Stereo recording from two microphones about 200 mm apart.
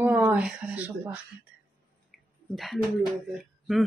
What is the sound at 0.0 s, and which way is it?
Speech, 10° right (ahead or behind).